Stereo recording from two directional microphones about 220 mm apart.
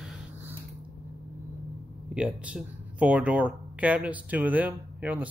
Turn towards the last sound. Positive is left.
turn(degrees=-5)  # may be behind; listen again after turning